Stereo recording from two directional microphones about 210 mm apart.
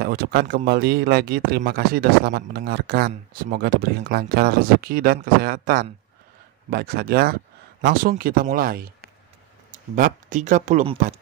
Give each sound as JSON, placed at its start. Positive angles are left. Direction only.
{"t": 0.0, "sound": "speech", "side_deg": -45}
{"t": 3.1, "sound": "speech", "side_deg": -35}
{"t": 3.6, "sound": "speech", "side_deg": -50}